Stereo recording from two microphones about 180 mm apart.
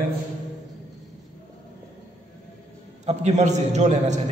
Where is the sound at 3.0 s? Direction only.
40° right (ahead or behind).